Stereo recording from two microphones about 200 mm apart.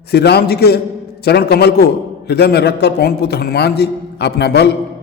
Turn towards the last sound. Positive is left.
turn(degrees=55)  # may be behind; listen again after turning